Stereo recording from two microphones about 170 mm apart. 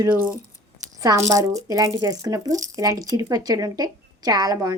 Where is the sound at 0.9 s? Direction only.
20° right (ahead or behind).